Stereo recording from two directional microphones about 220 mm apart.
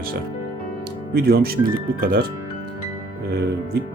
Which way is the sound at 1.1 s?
45° right (ahead or behind).